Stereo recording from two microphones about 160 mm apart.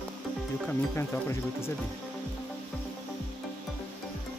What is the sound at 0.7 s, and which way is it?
Speech, 15° left (ahead or behind).